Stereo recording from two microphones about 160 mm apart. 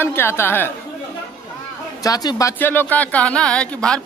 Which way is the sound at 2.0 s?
25° left (ahead or behind).